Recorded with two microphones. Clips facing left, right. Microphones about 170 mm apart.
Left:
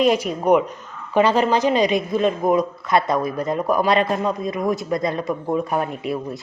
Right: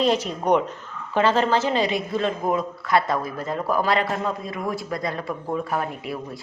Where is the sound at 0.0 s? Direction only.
10° left (ahead or behind).